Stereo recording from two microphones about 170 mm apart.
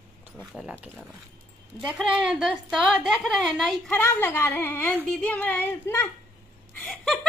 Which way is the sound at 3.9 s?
10° left (ahead or behind).